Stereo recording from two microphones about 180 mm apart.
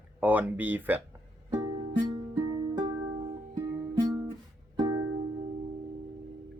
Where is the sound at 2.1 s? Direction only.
25° right (ahead or behind).